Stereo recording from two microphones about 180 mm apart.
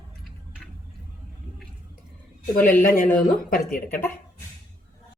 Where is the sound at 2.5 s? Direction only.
50° left (ahead or behind).